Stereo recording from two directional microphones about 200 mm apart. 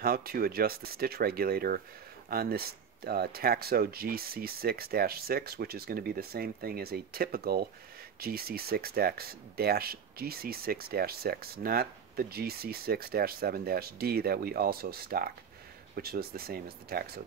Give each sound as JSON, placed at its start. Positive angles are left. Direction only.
{"t": 0.0, "sound": "speech", "side_deg": -50}